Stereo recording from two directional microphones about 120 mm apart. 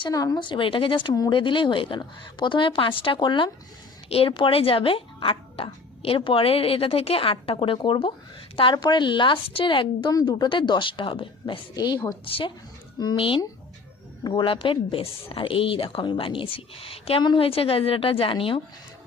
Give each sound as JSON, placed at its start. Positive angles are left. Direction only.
{"t": 0.1, "sound": "speech", "side_deg": 30}